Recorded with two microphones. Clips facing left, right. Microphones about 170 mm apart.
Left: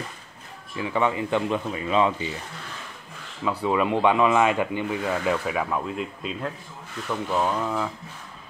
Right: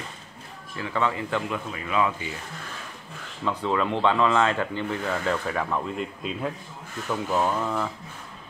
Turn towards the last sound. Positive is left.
turn(degrees=5)  # may be behind; listen again after turning